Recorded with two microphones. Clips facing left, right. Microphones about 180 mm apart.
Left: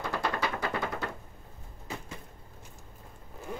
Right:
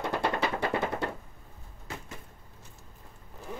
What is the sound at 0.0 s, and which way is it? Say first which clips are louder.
Music: right 3 dB; 25° right (ahead or behind).